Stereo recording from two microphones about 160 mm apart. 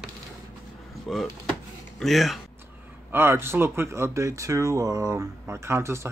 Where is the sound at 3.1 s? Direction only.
15° right (ahead or behind).